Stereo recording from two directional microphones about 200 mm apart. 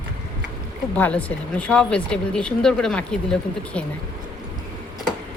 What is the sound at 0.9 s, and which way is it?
Speech, 5° left (ahead or behind).